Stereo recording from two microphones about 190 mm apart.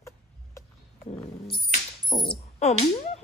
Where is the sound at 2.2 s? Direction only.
25° left (ahead or behind).